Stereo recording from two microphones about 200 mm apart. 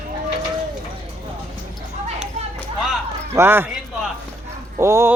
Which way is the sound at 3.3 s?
10° right (ahead or behind).